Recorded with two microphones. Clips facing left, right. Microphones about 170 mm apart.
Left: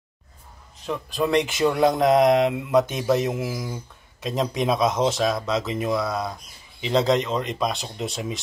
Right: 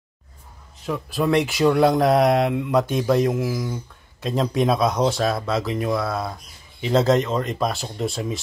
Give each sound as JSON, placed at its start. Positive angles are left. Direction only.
{"t": 0.8, "sound": "speech", "side_deg": -5}